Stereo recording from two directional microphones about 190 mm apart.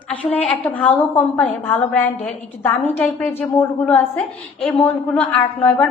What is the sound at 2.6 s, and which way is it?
A woman's voice, 10° left (ahead or behind).